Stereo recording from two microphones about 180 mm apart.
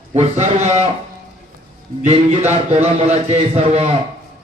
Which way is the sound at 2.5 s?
35° right (ahead or behind).